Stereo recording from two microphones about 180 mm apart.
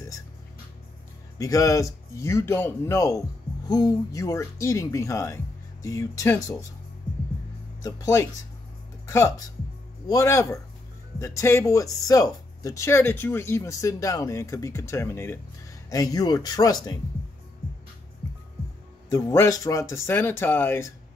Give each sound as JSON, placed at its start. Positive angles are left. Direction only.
{"t": 1.4, "sound": "a man's voice", "side_deg": 20}
{"t": 7.8, "sound": "a man's voice", "side_deg": 20}
{"t": 19.0, "sound": "a man's voice", "side_deg": 15}